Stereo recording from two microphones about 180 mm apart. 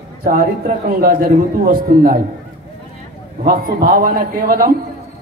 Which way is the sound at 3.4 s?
55° right (ahead or behind).